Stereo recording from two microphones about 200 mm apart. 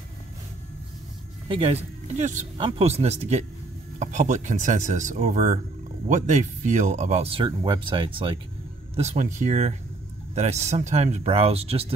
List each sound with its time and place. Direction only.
1.5 s speech: 30° right (ahead or behind)
8.9 s speech: 35° right (ahead or behind)